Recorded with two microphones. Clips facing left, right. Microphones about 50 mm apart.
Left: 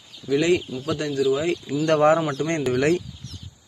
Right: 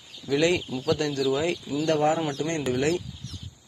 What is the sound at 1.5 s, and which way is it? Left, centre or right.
Speech, left.